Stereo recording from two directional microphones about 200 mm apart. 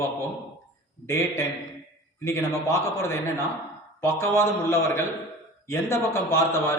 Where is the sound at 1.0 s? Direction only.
15° left (ahead or behind).